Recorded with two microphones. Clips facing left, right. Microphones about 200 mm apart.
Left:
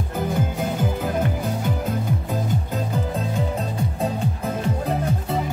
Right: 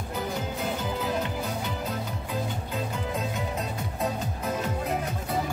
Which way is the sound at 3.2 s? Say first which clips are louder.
Left 5 dB; 30° left (ahead or behind).